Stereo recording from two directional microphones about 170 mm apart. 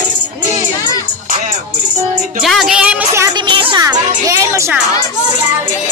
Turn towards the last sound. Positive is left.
turn(degrees=-20)  # may be behind; listen again after turning